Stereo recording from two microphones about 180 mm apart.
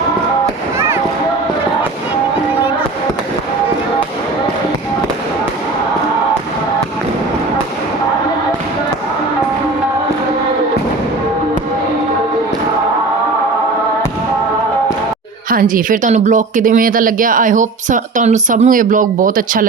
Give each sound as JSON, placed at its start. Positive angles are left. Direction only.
{"t": 15.4, "sound": "speech", "side_deg": -50}